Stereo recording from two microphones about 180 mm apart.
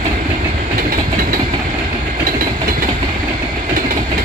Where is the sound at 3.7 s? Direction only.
50° right (ahead or behind).